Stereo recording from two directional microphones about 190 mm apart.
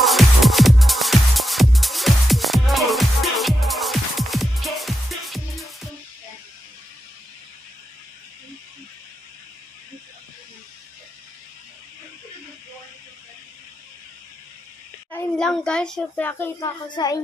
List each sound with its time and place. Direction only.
0.0 s music: centre (ahead or behind)
15.0 s a child's voice: 5° left (ahead or behind)
16.6 s a woman's voice: 20° left (ahead or behind)